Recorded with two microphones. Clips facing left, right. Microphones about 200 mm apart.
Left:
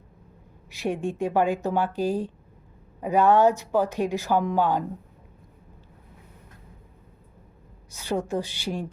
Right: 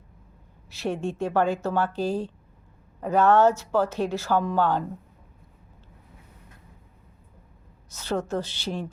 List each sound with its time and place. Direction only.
0.7 s speech: 15° left (ahead or behind)
7.9 s speech: 15° left (ahead or behind)